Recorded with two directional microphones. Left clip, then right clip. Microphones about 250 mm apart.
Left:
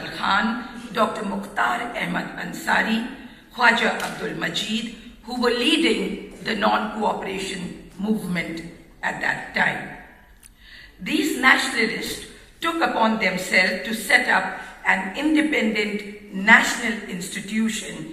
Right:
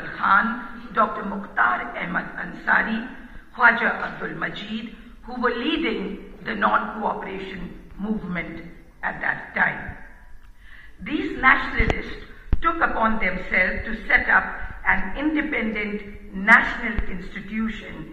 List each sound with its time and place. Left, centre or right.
0.0 s a sound: left
3.5 s a man's voice: left
11.1 s a man's voice: left